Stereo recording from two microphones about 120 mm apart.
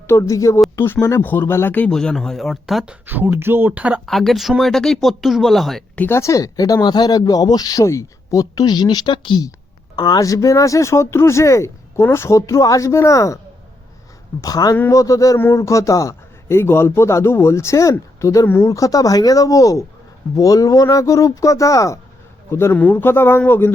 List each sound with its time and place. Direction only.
0.1 s a man's voice: 25° left (ahead or behind)
1.9 s speech: 5° left (ahead or behind); by 4.0 s 10° right (ahead or behind)
4.0 s speech: centre (ahead or behind)
6.0 s a man's voice: 20° left (ahead or behind)
14.4 s a man's voice: 30° left (ahead or behind)